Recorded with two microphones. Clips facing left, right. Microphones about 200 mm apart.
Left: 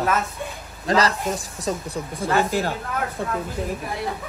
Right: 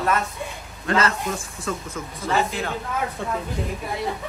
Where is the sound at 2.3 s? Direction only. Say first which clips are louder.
Left 2 dB; centre (ahead or behind).